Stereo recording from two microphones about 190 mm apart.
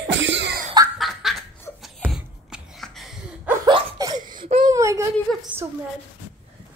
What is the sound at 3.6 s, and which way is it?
Laughter, 20° right (ahead or behind).